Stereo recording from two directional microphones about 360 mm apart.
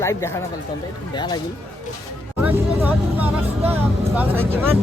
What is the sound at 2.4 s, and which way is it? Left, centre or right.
Speech, centre.